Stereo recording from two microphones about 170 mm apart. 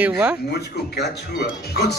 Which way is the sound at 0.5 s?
80° left.